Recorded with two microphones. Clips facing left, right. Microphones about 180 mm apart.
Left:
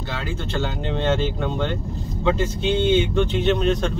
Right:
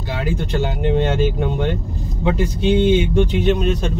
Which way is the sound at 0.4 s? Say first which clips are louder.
Right 5 dB; 15° right (ahead or behind).